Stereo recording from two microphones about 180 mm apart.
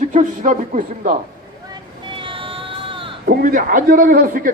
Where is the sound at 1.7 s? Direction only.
25° right (ahead or behind).